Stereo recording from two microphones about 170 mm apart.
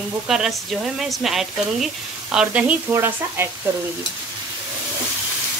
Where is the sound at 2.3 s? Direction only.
10° right (ahead or behind).